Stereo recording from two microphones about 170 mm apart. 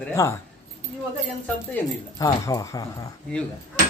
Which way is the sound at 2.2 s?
20° left (ahead or behind).